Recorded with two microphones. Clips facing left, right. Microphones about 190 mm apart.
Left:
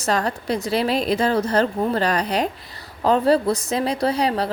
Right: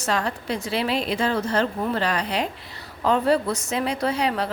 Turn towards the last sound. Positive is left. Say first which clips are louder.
# left 3 dB
turn(degrees=35)  # may be behind; listen again after turning